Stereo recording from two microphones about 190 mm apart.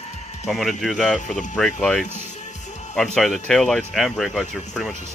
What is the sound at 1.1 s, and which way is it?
Speech, 40° left (ahead or behind).